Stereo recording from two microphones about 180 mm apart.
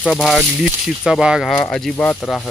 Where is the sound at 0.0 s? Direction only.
5° left (ahead or behind).